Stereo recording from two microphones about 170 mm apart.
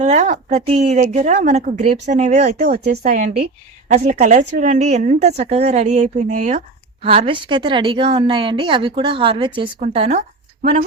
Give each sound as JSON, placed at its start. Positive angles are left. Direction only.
{"t": 0.0, "sound": "a woman's voice", "side_deg": -45}
{"t": 2.7, "sound": "speech", "side_deg": -70}
{"t": 3.0, "sound": "a woman's voice", "side_deg": -50}
{"t": 3.9, "sound": "a woman's voice", "side_deg": -45}
{"t": 7.3, "sound": "a woman's voice", "side_deg": -30}
{"t": 10.6, "sound": "speech", "side_deg": -55}